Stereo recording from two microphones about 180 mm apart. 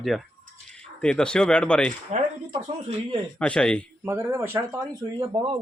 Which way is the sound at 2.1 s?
40° right (ahead or behind).